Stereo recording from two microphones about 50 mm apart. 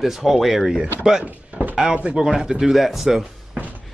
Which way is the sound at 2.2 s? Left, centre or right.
Centre.